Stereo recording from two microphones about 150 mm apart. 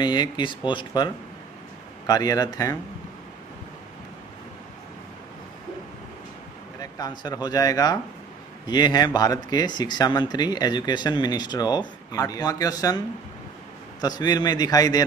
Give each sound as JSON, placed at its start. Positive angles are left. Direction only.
{"t": 0.0, "sound": "speech", "side_deg": 30}
{"t": 6.8, "sound": "speech", "side_deg": 25}
{"t": 14.0, "sound": "speech", "side_deg": 25}